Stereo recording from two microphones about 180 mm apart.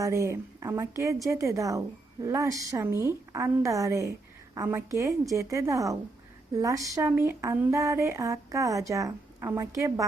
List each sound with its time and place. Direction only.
0.0 s speech: 15° right (ahead or behind)